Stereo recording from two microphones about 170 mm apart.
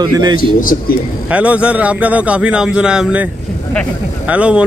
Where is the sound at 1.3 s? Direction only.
10° right (ahead or behind).